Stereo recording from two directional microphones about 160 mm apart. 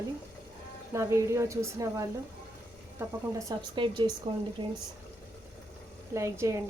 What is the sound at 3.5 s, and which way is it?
A woman's voice, 30° right (ahead or behind).